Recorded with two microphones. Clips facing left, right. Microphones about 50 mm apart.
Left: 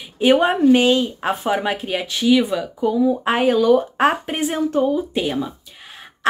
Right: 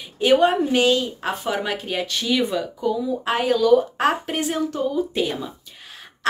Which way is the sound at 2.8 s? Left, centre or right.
Left.